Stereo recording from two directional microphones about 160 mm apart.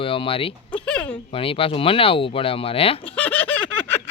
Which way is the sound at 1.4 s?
35° left (ahead or behind).